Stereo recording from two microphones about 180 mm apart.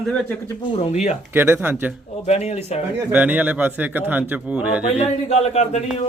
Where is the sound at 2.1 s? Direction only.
35° left (ahead or behind).